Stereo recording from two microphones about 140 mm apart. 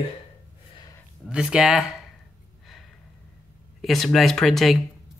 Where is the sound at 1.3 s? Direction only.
5° right (ahead or behind).